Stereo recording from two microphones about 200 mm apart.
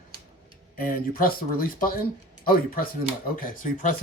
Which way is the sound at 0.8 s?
45° left (ahead or behind).